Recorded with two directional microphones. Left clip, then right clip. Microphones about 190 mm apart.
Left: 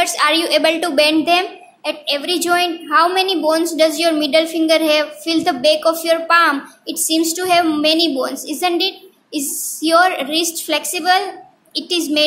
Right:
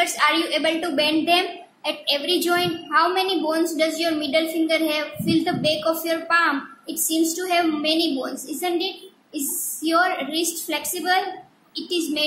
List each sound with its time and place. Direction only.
0.0 s a woman's voice: 35° left (ahead or behind)